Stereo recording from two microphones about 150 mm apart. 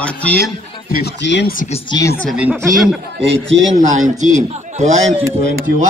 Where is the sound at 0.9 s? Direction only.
80° left.